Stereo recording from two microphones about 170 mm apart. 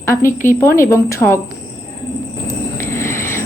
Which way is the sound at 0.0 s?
15° left (ahead or behind).